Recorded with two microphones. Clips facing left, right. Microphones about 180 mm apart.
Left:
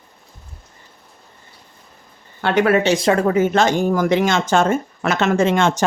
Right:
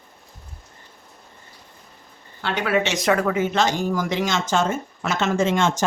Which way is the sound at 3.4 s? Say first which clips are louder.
Left 5 dB; 50° left (ahead or behind).